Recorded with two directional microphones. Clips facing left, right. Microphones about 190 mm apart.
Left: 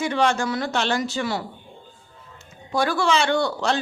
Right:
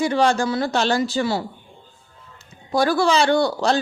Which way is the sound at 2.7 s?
35° right (ahead or behind).